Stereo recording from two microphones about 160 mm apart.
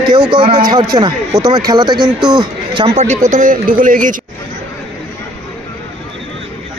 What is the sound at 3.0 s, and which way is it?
A man's voice, 50° right (ahead or behind).